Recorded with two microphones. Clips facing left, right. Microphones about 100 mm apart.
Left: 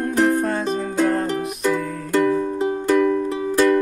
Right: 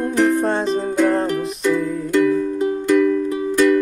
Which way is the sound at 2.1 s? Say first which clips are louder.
Right 2 dB; 40° left (ahead or behind).